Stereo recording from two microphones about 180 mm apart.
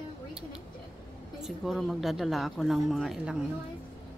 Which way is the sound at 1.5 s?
Centre (ahead or behind).